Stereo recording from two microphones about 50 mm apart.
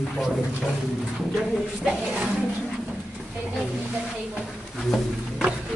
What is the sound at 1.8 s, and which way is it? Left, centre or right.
Speech, centre.